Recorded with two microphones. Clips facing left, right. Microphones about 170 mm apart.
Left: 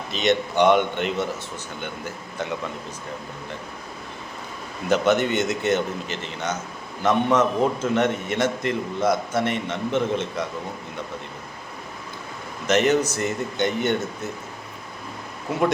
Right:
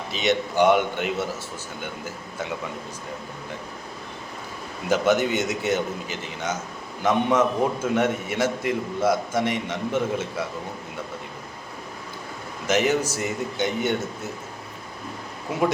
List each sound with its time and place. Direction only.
0.1 s a man's voice: 10° right (ahead or behind)
4.9 s a man's voice: 10° right (ahead or behind)
12.6 s a man's voice: 10° right (ahead or behind)